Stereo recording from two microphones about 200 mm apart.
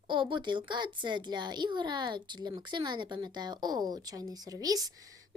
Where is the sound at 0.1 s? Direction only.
25° right (ahead or behind).